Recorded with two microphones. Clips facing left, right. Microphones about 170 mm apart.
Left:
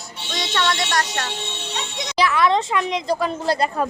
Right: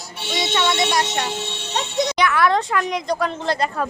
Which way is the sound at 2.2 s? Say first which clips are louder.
Left 2 dB; 25° left (ahead or behind).